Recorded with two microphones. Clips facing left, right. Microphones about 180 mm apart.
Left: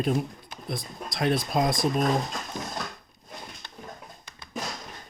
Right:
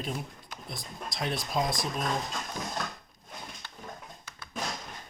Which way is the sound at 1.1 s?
55° left (ahead or behind).